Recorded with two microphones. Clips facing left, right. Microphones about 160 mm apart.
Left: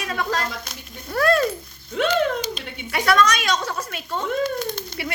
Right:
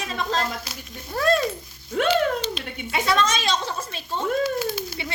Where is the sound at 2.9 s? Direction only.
25° right (ahead or behind).